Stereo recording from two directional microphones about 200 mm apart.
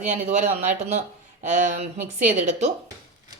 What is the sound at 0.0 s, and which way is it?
A woman's voice, 35° right (ahead or behind).